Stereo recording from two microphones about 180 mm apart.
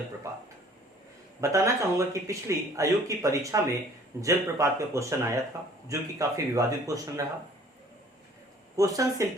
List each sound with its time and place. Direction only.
1.4 s speech: 15° right (ahead or behind)
8.7 s speech: 20° right (ahead or behind)